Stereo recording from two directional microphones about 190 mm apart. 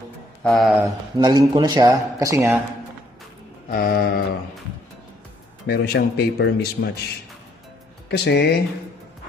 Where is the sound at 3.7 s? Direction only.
50° left (ahead or behind).